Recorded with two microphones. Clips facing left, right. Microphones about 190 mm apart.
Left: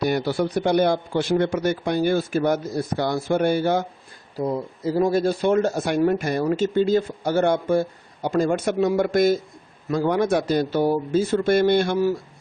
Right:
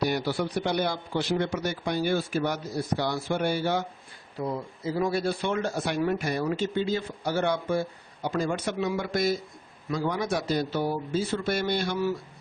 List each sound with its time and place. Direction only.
0.0 s speech: 50° left (ahead or behind)